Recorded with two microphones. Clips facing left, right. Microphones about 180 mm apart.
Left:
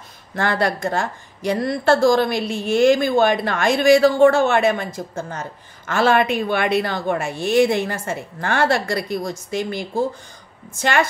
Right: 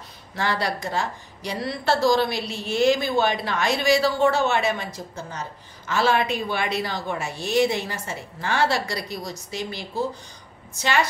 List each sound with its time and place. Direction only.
0.4 s speech: 50° left (ahead or behind)